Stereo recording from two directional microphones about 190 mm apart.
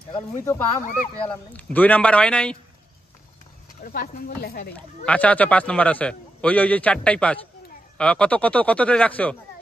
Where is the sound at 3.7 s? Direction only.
50° left (ahead or behind).